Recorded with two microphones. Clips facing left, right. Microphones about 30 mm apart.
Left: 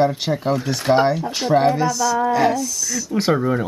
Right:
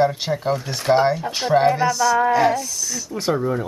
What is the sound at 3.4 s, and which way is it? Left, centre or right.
Speech, left.